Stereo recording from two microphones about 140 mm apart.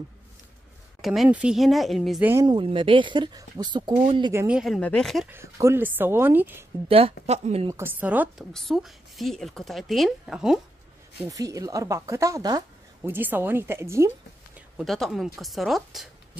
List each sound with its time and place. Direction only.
1.0 s a woman's voice: centre (ahead or behind)
2.4 s speech: 35° right (ahead or behind)
4.5 s a woman's voice: 5° right (ahead or behind)
5.3 s speech: 20° right (ahead or behind)
6.9 s a woman's voice: 45° right (ahead or behind)
7.6 s speech: 20° right (ahead or behind)
8.4 s a woman's voice: centre (ahead or behind)
11.2 s speech: 25° right (ahead or behind)
13.1 s speech: 15° right (ahead or behind)
14.8 s a woman's voice: centre (ahead or behind)